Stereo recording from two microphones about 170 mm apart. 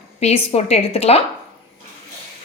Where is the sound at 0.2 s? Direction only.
40° left (ahead or behind).